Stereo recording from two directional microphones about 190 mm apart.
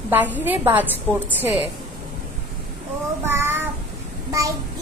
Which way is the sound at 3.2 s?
10° right (ahead or behind).